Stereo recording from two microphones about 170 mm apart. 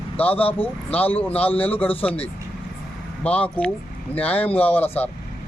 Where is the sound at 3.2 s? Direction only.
10° left (ahead or behind).